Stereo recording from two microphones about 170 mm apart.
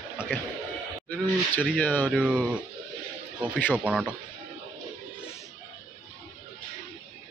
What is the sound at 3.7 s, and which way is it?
Speech, 10° right (ahead or behind).